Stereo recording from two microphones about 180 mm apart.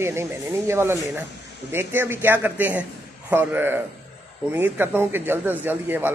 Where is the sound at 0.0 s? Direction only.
15° right (ahead or behind).